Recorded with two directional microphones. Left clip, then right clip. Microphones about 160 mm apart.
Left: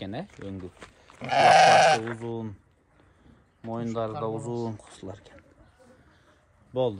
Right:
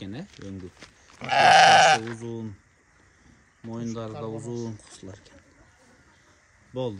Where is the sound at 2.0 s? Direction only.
5° right (ahead or behind).